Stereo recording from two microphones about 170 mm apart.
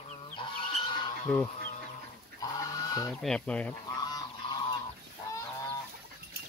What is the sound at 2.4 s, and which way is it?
Goose, 20° left (ahead or behind).